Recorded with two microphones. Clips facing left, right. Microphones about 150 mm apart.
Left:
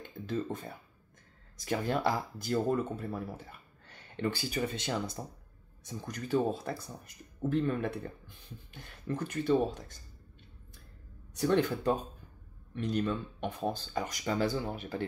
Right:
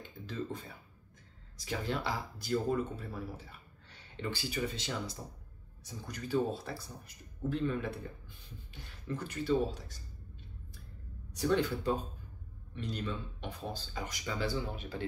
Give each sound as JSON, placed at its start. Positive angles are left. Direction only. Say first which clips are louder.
{"t": 0.3, "sound": "speech", "louder": "left 5 dB", "side_deg": 50}
{"t": 11.3, "sound": "speech", "louder": "left 3 dB", "side_deg": 50}